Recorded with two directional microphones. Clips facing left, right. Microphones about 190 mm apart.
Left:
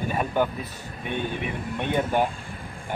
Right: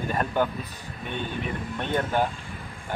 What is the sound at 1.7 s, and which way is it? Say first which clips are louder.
Speech: left 2 dB; 10° left (ahead or behind).